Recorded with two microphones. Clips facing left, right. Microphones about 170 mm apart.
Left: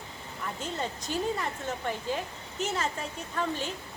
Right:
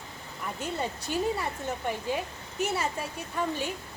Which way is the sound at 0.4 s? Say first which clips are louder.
Right 2 dB; 10° right (ahead or behind).